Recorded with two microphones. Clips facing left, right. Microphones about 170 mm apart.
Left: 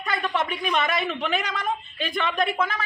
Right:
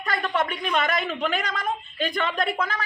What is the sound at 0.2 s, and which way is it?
Speech, 5° left (ahead or behind).